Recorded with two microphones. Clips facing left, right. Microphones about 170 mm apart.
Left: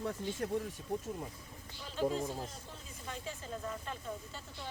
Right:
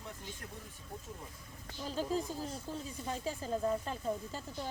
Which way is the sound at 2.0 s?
35° right (ahead or behind).